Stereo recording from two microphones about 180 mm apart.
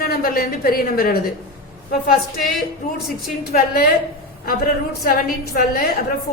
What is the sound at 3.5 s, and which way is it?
Speech, 55° left (ahead or behind).